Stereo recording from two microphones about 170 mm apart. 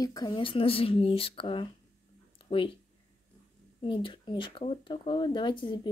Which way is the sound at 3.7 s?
30° left (ahead or behind).